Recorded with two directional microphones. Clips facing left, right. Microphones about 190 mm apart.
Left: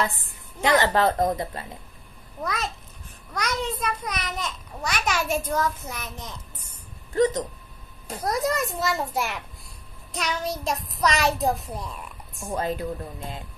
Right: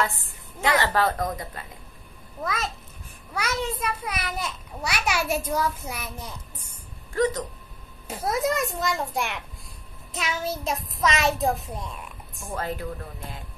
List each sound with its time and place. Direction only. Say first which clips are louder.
0.7 s speech: left 4 dB; 20° left (ahead or behind)
2.4 s a child's voice: even; 5° right (ahead or behind)
8.1 s a child's voice: even; 5° right (ahead or behind)
12.4 s speech: left 3 dB; 20° left (ahead or behind)